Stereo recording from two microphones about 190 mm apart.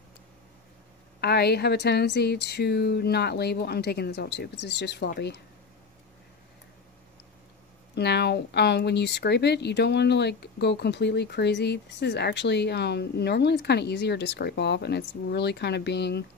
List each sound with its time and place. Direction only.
1.2 s speech: 60° left (ahead or behind)
7.9 s speech: 60° left (ahead or behind)